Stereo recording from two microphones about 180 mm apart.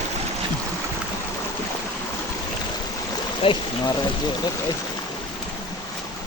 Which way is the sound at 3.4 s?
30° left (ahead or behind).